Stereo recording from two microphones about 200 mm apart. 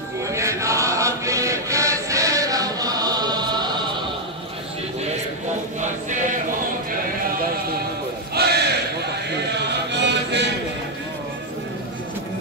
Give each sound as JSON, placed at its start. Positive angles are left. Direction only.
{"t": 0.3, "sound": "music", "side_deg": -15}
{"t": 5.8, "sound": "chant", "side_deg": -40}
{"t": 8.4, "sound": "a sound", "side_deg": -55}
{"t": 9.7, "sound": "chant", "side_deg": -60}